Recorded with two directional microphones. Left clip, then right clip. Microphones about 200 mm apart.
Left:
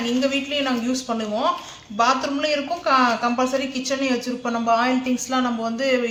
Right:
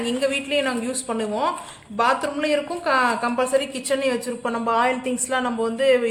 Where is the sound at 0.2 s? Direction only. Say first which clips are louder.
Right 2 dB; 50° right (ahead or behind).